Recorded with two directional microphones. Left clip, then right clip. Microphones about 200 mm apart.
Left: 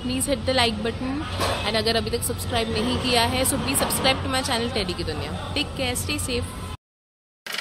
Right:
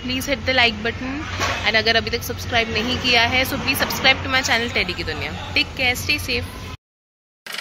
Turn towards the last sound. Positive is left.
turn(degrees=5)  # may be behind; listen again after turning